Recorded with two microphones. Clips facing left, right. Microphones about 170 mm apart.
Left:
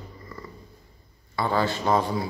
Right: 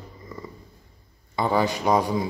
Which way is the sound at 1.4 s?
15° right (ahead or behind).